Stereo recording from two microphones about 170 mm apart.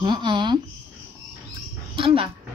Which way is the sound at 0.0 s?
25° right (ahead or behind).